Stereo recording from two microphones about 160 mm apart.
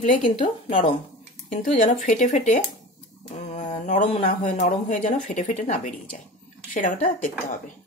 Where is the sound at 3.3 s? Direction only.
45° left (ahead or behind).